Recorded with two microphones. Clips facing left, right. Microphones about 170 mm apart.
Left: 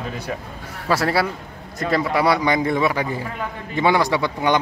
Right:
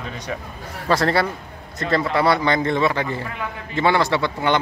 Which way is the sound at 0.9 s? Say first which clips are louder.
Right 1 dB; 5° left (ahead or behind).